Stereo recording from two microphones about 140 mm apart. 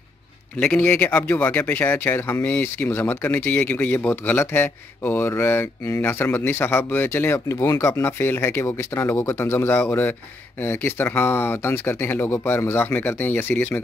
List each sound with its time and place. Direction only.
0.6 s speech: 10° left (ahead or behind)